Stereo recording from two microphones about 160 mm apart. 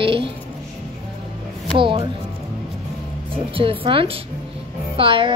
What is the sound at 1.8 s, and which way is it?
Speech, 30° right (ahead or behind).